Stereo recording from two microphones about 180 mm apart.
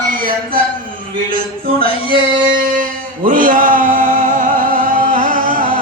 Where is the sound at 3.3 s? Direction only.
50° right (ahead or behind).